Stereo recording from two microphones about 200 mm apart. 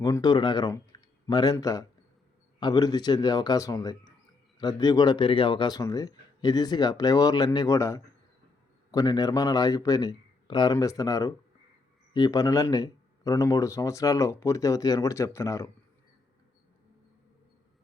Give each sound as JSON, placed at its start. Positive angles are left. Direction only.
{"t": 0.0, "sound": "a man's voice", "side_deg": 20}